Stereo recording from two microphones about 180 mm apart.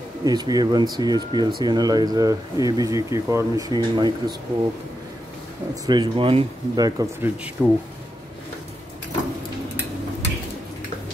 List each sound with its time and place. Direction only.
0.2 s speech: 20° right (ahead or behind)
5.9 s speech: 25° right (ahead or behind)
7.6 s speech: 5° right (ahead or behind)